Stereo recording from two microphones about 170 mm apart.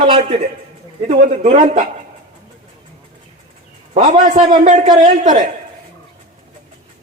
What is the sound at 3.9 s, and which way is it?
A man's voice, 40° right (ahead or behind).